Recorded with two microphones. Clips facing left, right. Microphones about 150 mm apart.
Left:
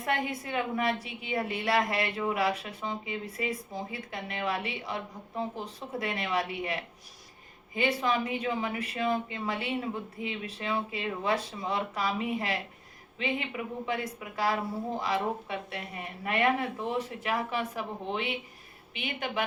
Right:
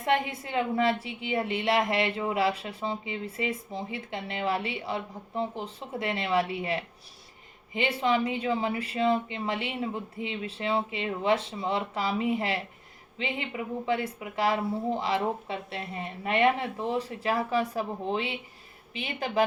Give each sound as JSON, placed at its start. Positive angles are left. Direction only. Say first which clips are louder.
{"t": 0.0, "sound": "a woman's voice", "louder": "right 4 dB", "side_deg": -25}